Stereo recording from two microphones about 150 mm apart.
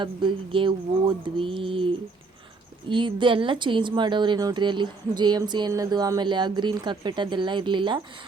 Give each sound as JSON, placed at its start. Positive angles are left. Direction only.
{"t": 0.0, "sound": "speech", "side_deg": -35}
{"t": 2.9, "sound": "speech", "side_deg": -35}